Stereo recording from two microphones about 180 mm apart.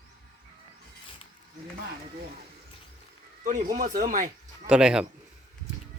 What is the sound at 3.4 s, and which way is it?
Speech, 40° right (ahead or behind).